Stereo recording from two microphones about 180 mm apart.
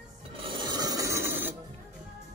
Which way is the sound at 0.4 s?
25° right (ahead or behind).